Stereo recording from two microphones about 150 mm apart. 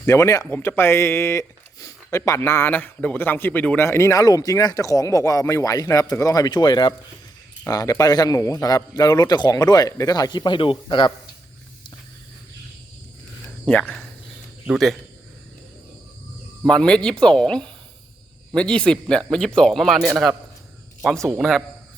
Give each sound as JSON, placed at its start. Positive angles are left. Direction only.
{"t": 0.0, "sound": "speech", "side_deg": 20}
{"t": 13.7, "sound": "speech", "side_deg": 10}
{"t": 16.6, "sound": "speech", "side_deg": 5}